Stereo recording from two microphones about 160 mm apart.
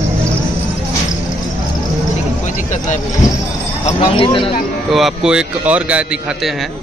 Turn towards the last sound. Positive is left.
turn(degrees=-10)  # may be behind; listen again after turning